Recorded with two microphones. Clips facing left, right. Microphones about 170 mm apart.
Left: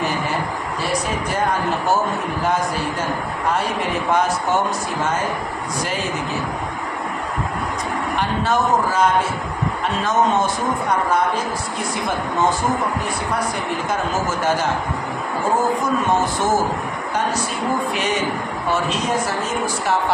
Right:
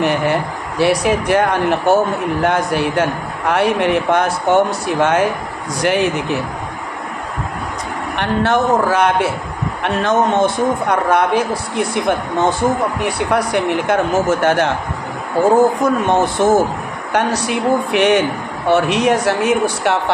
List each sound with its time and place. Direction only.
0.0 s a man's voice: 65° right (ahead or behind)
8.2 s a man's voice: 70° right (ahead or behind)
15.8 s a man's voice: 65° right (ahead or behind)